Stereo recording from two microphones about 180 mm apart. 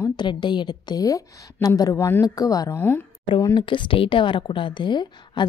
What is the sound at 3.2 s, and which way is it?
A woman's voice, 25° left (ahead or behind).